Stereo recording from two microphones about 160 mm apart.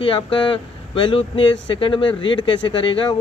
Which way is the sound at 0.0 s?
30° left (ahead or behind).